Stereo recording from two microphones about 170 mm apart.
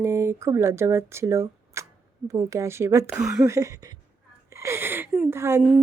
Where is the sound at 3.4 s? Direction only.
20° right (ahead or behind).